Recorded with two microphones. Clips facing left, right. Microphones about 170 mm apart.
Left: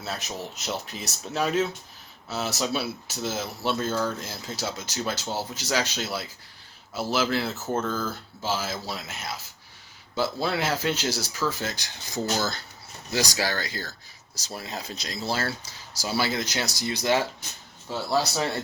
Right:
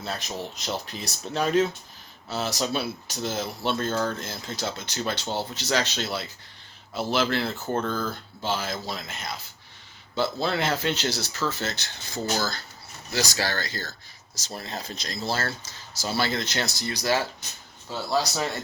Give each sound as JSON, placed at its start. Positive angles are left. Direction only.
{"t": 0.0, "sound": "speech", "side_deg": 5}
{"t": 16.9, "sound": "speech", "side_deg": 25}